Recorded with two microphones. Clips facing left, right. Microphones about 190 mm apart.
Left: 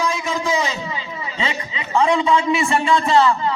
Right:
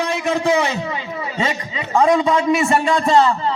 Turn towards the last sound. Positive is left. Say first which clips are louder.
# right 1 dB
turn(degrees=-35)  # may be behind; listen again after turning